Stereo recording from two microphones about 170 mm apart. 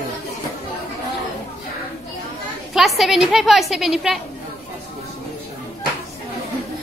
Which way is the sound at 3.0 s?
Centre (ahead or behind).